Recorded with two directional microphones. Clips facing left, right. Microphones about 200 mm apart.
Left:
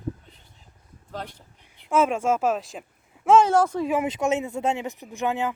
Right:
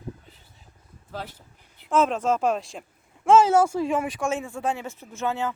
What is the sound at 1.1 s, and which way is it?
Speech, 5° right (ahead or behind).